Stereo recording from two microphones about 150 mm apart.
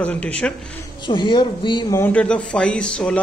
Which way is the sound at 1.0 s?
30° left (ahead or behind).